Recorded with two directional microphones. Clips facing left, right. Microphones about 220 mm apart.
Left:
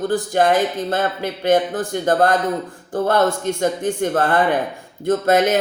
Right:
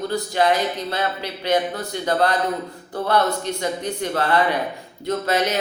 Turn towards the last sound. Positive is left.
turn(degrees=50)  # may be behind; listen again after turning